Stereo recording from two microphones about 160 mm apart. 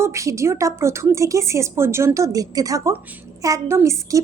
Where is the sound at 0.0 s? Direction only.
20° right (ahead or behind).